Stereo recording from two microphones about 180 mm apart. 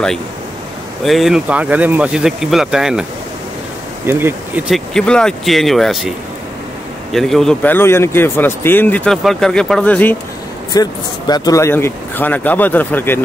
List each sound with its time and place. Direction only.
1.0 s speech: centre (ahead or behind)
4.6 s a man's voice: centre (ahead or behind)
10.7 s a man's voice: 20° left (ahead or behind)